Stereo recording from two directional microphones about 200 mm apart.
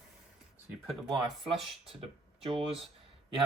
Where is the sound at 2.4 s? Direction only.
25° right (ahead or behind).